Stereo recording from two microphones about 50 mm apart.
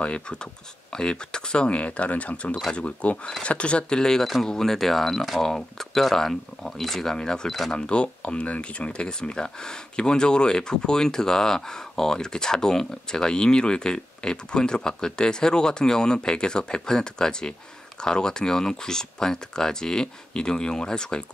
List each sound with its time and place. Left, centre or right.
0.0 s speech: left